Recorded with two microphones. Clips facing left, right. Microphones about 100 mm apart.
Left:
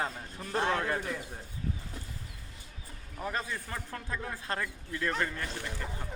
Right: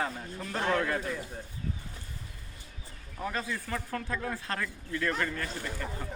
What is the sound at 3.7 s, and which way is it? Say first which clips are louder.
Speech: right 4 dB; 15° left (ahead or behind).